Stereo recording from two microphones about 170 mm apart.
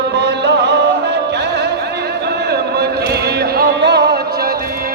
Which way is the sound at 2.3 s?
70° right (ahead or behind).